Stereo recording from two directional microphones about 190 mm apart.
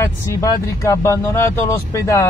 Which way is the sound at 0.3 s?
15° left (ahead or behind).